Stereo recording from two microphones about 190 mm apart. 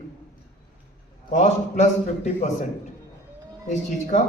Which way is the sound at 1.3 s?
40° left (ahead or behind).